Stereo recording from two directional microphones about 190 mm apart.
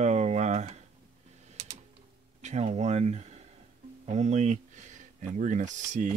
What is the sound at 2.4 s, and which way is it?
Speech, 35° right (ahead or behind).